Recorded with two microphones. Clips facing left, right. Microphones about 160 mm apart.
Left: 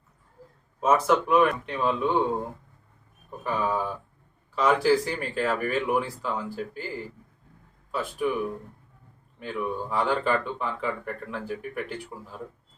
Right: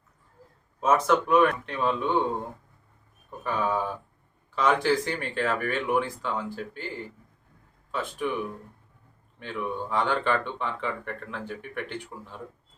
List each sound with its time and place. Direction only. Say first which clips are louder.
0.8 s speech: left 1 dB; 5° left (ahead or behind)
3.4 s speech: even; centre (ahead or behind)
7.9 s speech: left 2 dB; 5° left (ahead or behind)
9.4 s speech: left 2 dB; 5° left (ahead or behind)